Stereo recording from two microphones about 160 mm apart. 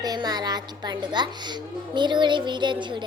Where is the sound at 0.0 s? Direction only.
25° right (ahead or behind).